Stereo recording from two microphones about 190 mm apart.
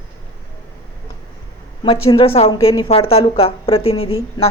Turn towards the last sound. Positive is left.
turn(degrees=30)  # may be behind; listen again after turning